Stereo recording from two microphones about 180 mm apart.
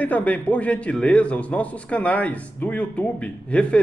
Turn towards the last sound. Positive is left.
turn(degrees=5)  # may be behind; listen again after turning